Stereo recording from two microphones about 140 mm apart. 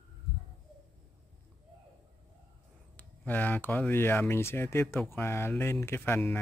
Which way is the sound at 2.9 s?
10° left (ahead or behind).